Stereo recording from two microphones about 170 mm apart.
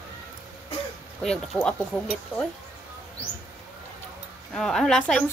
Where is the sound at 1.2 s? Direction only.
5° left (ahead or behind).